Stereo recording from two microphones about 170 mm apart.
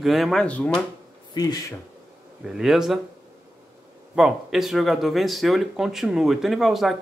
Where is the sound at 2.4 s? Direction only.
5° right (ahead or behind).